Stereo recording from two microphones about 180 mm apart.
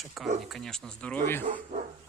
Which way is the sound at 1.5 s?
45° right (ahead or behind).